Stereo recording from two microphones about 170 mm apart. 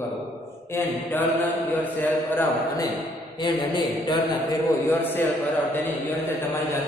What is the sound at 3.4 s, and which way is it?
Speech, 25° left (ahead or behind).